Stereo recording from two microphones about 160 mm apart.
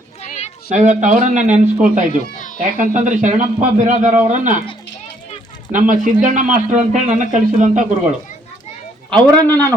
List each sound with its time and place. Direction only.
0.2 s children playing: 45° left (ahead or behind)
0.7 s a man's voice: 50° right (ahead or behind)
5.7 s a man's voice: 55° right (ahead or behind)
9.1 s a man's voice: 25° right (ahead or behind)